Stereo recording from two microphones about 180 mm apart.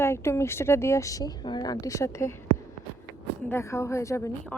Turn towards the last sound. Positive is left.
turn(degrees=15)  # may be behind; listen again after turning